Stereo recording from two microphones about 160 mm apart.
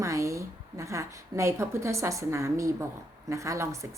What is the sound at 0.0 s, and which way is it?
A woman's voice, 20° right (ahead or behind).